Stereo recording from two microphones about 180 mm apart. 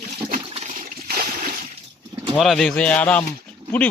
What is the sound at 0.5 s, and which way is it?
Water, 45° right (ahead or behind).